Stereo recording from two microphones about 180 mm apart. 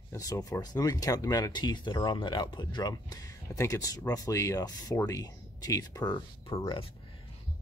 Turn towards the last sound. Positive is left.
turn(degrees=30)  # may be behind; listen again after turning